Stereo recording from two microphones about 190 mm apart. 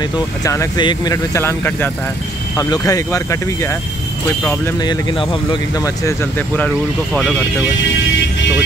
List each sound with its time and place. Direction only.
0.4 s speech: 15° left (ahead or behind)
5.1 s speech: 25° left (ahead or behind); by 6.7 s 10° left (ahead or behind)